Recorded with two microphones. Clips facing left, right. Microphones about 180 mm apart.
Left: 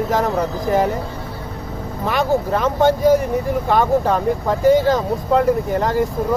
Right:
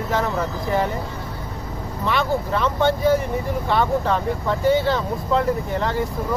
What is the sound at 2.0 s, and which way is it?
Speech, 45° left (ahead or behind).